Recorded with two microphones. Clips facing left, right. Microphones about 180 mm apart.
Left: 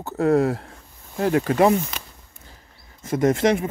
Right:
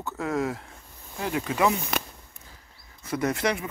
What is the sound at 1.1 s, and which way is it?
Speech, 55° left (ahead or behind).